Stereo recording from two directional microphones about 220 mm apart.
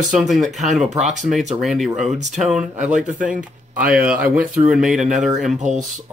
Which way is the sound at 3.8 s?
5° right (ahead or behind).